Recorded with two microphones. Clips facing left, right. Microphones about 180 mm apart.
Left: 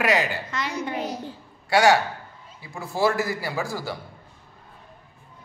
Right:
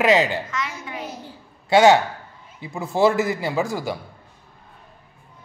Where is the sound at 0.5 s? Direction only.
35° left (ahead or behind).